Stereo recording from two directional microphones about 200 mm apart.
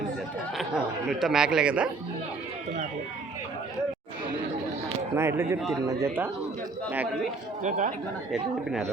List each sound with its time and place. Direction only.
0.5 s a man's voice: centre (ahead or behind)
5.1 s speech: 15° right (ahead or behind)
5.5 s a man's voice: centre (ahead or behind)
5.8 s speech: 15° right (ahead or behind)
7.6 s speech: 40° right (ahead or behind)